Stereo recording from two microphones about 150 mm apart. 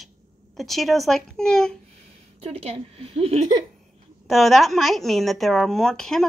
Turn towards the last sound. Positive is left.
turn(degrees=5)  # may be behind; listen again after turning